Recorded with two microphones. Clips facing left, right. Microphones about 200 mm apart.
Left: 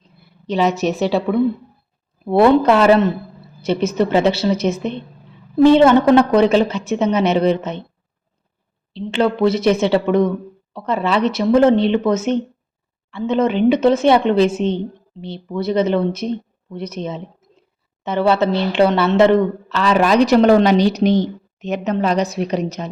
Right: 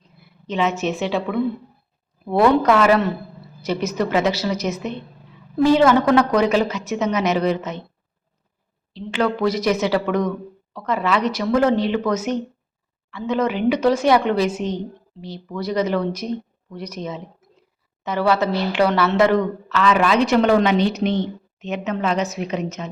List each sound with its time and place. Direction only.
0.4 s a woman's voice: 35° left (ahead or behind)
8.9 s a woman's voice: 25° left (ahead or behind)